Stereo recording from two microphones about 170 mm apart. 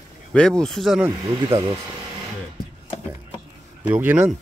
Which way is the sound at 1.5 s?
25° right (ahead or behind).